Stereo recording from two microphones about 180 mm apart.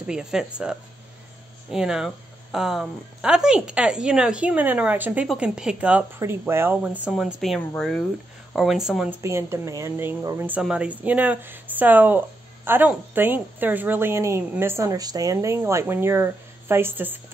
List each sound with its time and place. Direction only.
0.0 s speech: 5° right (ahead or behind)
9.2 s a woman's voice: 15° right (ahead or behind)